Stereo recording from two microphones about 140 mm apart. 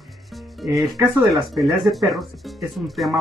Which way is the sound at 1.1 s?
25° right (ahead or behind).